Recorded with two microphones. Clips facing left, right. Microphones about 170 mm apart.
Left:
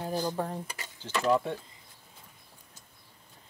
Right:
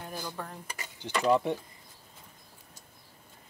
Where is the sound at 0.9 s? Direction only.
15° right (ahead or behind).